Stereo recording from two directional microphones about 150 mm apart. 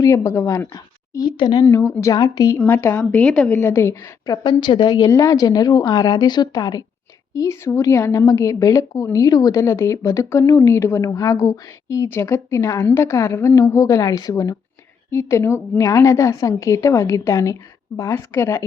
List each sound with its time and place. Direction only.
0.0 s a woman's voice: 20° left (ahead or behind); by 3.5 s 5° left (ahead or behind)
3.5 s speech: 15° left (ahead or behind)
4.4 s a woman's voice: 30° left (ahead or behind)